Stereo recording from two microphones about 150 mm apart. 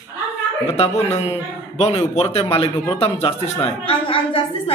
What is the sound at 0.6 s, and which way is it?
A man's voice, 45° left (ahead or behind).